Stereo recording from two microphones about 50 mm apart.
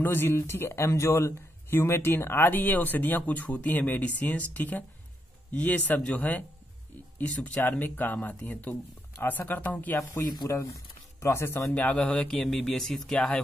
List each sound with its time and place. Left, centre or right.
0.0 s speech: left
1.7 s speech: left
2.5 s speech: left
9.9 s speech: left
11.7 s speech: left; by 13.2 s centre